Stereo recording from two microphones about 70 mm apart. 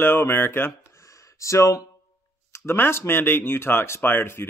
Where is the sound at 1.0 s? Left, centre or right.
Left.